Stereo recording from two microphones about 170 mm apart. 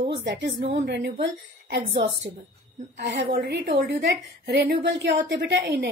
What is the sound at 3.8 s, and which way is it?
A woman's voice, 90° right.